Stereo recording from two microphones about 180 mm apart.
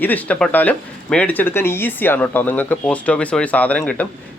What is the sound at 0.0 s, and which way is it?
Speech, 10° left (ahead or behind).